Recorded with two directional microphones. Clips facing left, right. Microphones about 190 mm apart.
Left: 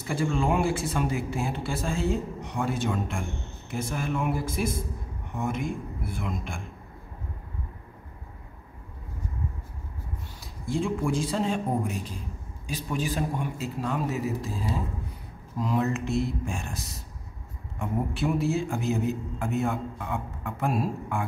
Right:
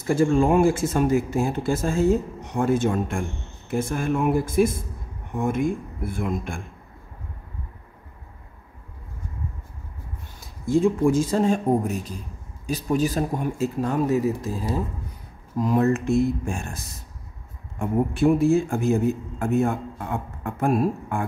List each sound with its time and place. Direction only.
0.0 s a man's voice: 45° right (ahead or behind)
10.4 s a man's voice: 45° right (ahead or behind)